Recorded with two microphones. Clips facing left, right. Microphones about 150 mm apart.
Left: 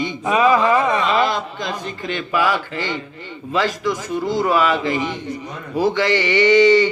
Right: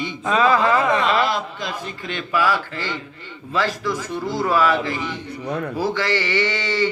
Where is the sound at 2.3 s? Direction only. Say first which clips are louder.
Left 1 dB; 15° left (ahead or behind).